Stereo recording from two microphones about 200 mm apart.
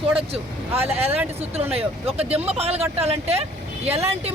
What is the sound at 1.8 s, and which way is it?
Speech, 30° right (ahead or behind).